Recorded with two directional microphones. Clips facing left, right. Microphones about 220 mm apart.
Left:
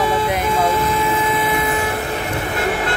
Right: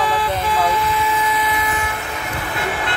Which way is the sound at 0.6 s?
50° left (ahead or behind).